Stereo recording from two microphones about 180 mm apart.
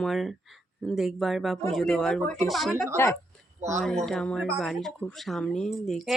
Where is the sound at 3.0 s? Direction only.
15° left (ahead or behind).